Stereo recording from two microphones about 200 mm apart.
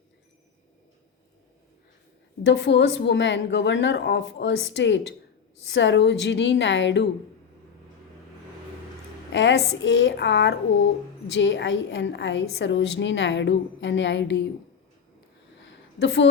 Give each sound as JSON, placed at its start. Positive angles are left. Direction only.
{"t": 2.5, "sound": "a woman's voice", "side_deg": 60}
{"t": 9.3, "sound": "a woman's voice", "side_deg": 65}
{"t": 16.0, "sound": "a woman's voice", "side_deg": 65}